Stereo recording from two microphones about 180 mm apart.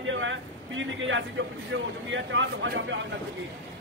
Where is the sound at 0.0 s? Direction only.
90° right.